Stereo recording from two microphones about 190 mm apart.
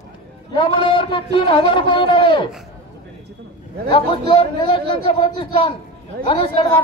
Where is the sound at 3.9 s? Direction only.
25° left (ahead or behind).